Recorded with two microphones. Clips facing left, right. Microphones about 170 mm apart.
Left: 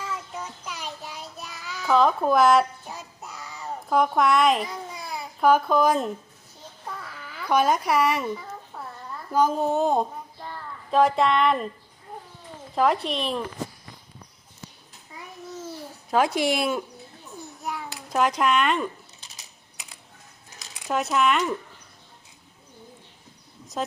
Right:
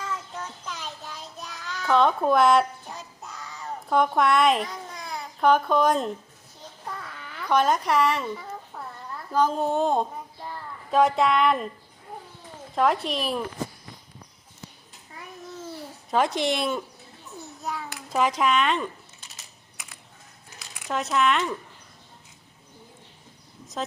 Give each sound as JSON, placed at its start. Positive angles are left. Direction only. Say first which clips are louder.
{"t": 0.0, "sound": "child singing", "louder": "even", "side_deg": 10}
{"t": 6.9, "sound": "a child's voice", "louder": "even", "side_deg": 0}
{"t": 8.4, "sound": "a sound", "louder": "right 1 dB", "side_deg": 0}
{"t": 9.3, "sound": "a child's voice", "louder": "left 1 dB", "side_deg": 5}
{"t": 12.7, "sound": "speech", "louder": "left 1 dB", "side_deg": 0}
{"t": 16.0, "sound": "speech", "louder": "left 2 dB", "side_deg": 0}
{"t": 17.6, "sound": "a sound", "louder": "even", "side_deg": 15}
{"t": 18.1, "sound": "speech", "louder": "left 1 dB", "side_deg": 0}
{"t": 20.9, "sound": "speech", "louder": "left 1 dB", "side_deg": 0}